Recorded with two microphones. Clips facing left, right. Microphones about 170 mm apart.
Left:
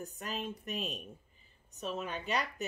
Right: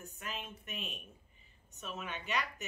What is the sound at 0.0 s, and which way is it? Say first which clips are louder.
A woman's voice: left 6 dB; 35° left (ahead or behind).